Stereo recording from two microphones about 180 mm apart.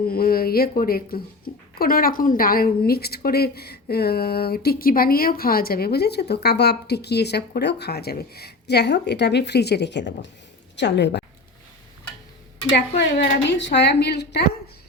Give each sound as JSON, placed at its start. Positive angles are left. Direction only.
{"t": 0.1, "sound": "a woman's voice", "side_deg": 55}
{"t": 13.0, "sound": "a woman's voice", "side_deg": 75}